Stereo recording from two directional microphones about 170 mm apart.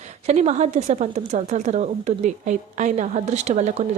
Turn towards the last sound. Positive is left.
turn(degrees=-40)  # may be behind; listen again after turning